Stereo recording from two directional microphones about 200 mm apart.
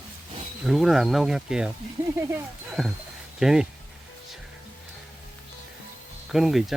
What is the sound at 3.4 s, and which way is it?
Speech, centre (ahead or behind).